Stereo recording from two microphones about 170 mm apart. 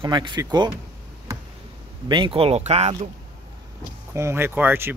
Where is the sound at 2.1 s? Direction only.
30° right (ahead or behind).